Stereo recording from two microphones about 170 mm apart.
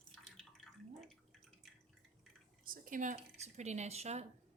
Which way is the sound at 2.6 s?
55° right (ahead or behind).